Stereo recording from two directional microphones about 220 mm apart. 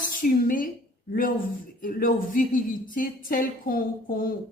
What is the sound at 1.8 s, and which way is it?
A woman's voice, 40° left (ahead or behind).